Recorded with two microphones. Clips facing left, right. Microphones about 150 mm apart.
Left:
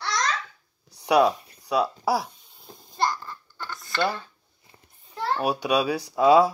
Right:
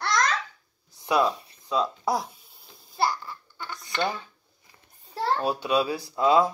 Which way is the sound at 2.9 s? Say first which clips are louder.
Even; 10° right (ahead or behind).